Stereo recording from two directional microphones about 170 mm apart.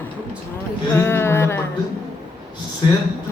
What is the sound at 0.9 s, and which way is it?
Speech, 15° left (ahead or behind).